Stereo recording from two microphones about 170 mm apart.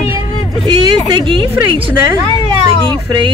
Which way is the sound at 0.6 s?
30° right (ahead or behind).